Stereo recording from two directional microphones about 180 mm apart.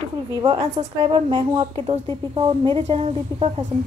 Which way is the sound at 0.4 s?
25° right (ahead or behind).